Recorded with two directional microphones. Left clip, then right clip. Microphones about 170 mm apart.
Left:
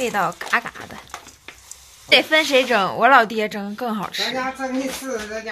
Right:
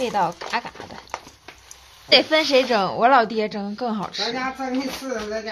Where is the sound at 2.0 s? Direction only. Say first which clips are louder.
Left 1 dB; 10° right (ahead or behind).